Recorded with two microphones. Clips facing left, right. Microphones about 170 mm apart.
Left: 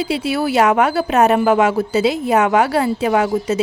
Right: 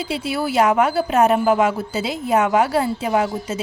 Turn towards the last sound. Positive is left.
turn(degrees=75)  # may be behind; listen again after turning